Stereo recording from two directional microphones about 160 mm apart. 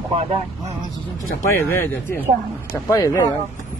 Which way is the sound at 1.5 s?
15° left (ahead or behind).